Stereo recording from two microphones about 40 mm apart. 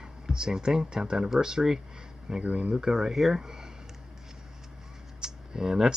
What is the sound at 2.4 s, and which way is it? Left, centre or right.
Speech, right.